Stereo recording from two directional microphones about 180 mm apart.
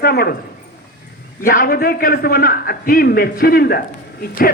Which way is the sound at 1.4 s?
50° left (ahead or behind).